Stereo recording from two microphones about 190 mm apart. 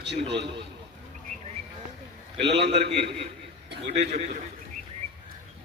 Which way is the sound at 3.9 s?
35° right (ahead or behind).